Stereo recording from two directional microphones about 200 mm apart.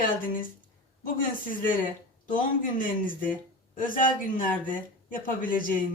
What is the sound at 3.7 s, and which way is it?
Speech, 45° left (ahead or behind).